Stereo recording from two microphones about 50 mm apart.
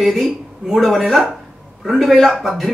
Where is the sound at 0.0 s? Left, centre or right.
Centre.